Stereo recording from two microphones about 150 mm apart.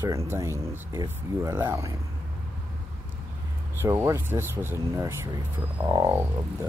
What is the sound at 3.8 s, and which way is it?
Speech, 15° right (ahead or behind).